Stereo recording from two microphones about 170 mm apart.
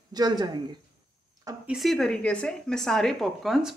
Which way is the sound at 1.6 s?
Centre (ahead or behind).